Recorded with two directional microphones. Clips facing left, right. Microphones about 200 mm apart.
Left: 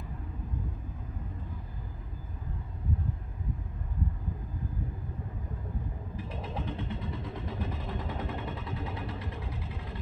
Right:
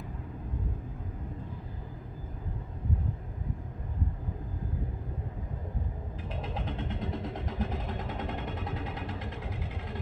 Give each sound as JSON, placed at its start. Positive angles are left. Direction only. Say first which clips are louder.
{"t": 6.6, "sound": "vehicle", "louder": "even", "side_deg": -50}